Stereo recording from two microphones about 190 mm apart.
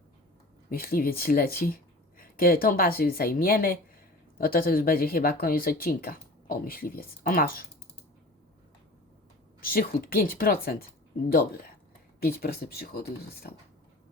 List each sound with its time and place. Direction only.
0.7 s speech: 50° left (ahead or behind)
9.6 s speech: 50° left (ahead or behind)